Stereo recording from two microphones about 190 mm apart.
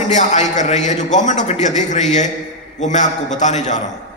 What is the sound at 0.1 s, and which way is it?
A man's voice, 40° left (ahead or behind).